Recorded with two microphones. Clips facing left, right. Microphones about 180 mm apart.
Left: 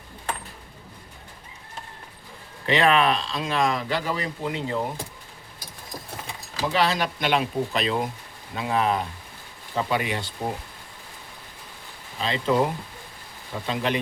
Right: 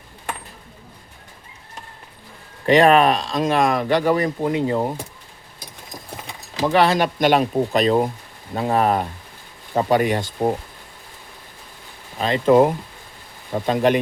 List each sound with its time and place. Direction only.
2.6 s speech: 45° right (ahead or behind)
6.7 s speech: 50° right (ahead or behind)
12.2 s speech: 50° right (ahead or behind)